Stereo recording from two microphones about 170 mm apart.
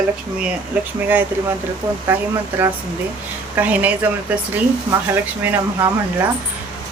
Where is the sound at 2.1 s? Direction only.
10° right (ahead or behind).